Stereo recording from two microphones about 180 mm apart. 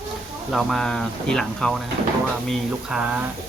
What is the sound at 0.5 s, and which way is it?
Speech, centre (ahead or behind).